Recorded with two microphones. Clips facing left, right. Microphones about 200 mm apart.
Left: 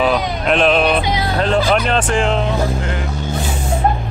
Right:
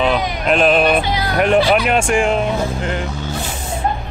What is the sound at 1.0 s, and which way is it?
Music, 25° left (ahead or behind).